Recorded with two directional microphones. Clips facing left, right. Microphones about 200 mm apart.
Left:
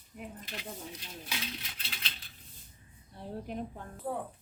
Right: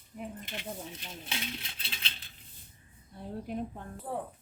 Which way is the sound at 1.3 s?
30° right (ahead or behind).